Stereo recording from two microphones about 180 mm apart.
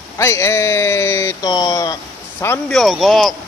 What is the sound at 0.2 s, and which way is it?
Speech, 15° left (ahead or behind).